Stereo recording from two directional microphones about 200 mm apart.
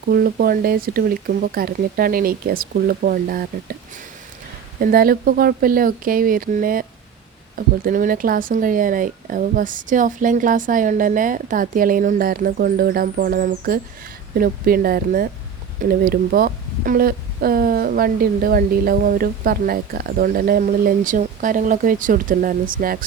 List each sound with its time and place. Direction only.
0.1 s speech: 50° right (ahead or behind)
4.8 s speech: 45° right (ahead or behind)
7.9 s speech: 45° right (ahead or behind)